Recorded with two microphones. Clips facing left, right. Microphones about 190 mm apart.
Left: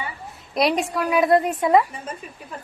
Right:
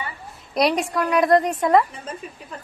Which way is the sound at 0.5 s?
Centre (ahead or behind).